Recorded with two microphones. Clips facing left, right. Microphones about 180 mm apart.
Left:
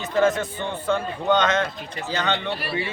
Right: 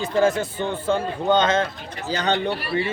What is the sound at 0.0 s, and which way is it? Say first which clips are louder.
A man's voice: right 1 dB; 30° right (ahead or behind).